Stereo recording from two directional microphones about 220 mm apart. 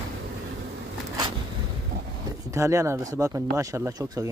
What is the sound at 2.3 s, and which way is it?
Speech, 15° right (ahead or behind).